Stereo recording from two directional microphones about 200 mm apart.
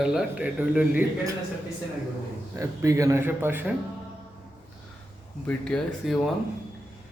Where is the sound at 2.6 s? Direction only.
15° right (ahead or behind).